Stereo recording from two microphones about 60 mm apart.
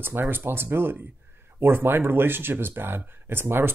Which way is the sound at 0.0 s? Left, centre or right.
Right.